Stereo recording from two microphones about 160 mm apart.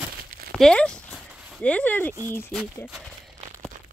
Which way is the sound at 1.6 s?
10° left (ahead or behind).